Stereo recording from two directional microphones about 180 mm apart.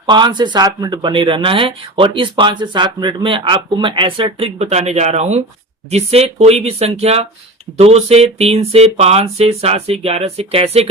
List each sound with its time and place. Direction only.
0.0 s speech: 25° right (ahead or behind)